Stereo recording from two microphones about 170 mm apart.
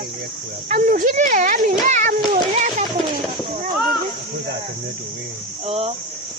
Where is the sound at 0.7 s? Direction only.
50° right (ahead or behind).